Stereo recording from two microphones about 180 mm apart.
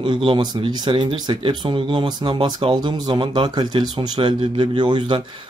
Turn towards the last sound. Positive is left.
turn(degrees=-25)  # may be behind; listen again after turning